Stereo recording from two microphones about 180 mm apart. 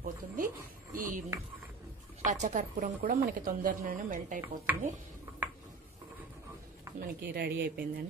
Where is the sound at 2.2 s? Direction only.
40° right (ahead or behind).